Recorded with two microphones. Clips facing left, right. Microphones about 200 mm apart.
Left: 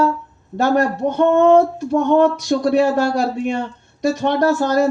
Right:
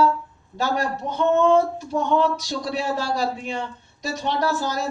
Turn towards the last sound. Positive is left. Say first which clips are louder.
# left 9 dB
turn(degrees=55)  # may be behind; listen again after turning